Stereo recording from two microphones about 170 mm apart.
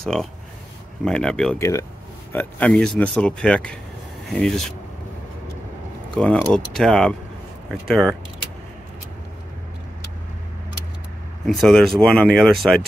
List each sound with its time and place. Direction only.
0.0 s speech: 5° left (ahead or behind)
1.6 s speech: 20° left (ahead or behind)
2.3 s speech: 5° left (ahead or behind)
6.1 s speech: 5° left (ahead or behind)
11.4 s speech: centre (ahead or behind)